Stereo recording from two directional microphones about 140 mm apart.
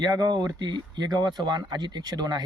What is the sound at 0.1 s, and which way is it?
Speech, 25° right (ahead or behind).